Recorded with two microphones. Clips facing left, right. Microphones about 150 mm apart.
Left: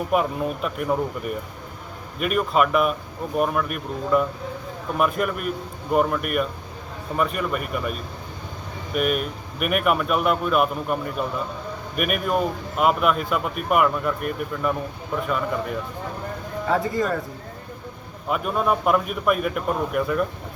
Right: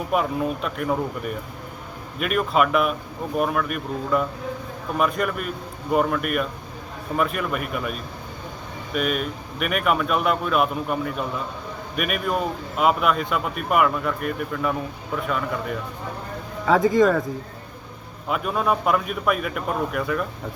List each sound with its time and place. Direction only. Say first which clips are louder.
0.1 s speech: right 1 dB; centre (ahead or behind)
2.1 s speech: even; centre (ahead or behind)
9.0 s speech: left 1 dB; 5° left (ahead or behind)
16.6 s speech: right 6 dB; 90° right
18.3 s speech: left 1 dB; centre (ahead or behind)